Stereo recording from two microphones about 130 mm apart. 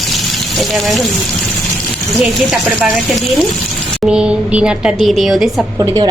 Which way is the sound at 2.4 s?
Centre (ahead or behind).